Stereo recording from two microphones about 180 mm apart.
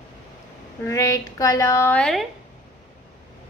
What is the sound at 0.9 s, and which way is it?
A woman's voice, 15° left (ahead or behind).